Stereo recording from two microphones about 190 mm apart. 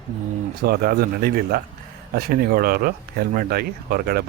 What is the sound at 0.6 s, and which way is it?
Speech, 55° right (ahead or behind).